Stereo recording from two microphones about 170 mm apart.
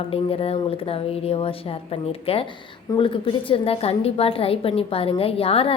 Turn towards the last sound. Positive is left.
turn(degrees=35)  # may be behind; listen again after turning